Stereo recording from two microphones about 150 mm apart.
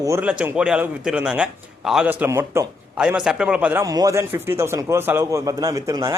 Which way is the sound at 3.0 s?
5° right (ahead or behind).